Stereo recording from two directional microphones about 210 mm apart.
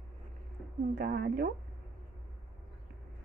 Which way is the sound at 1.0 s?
45° right (ahead or behind).